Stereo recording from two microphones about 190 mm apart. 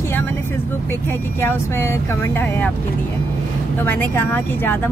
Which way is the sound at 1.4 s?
15° left (ahead or behind).